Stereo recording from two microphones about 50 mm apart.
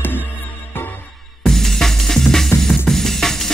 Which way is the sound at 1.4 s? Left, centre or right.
Centre.